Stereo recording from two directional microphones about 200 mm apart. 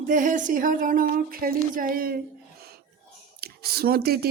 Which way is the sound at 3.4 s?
50° right (ahead or behind).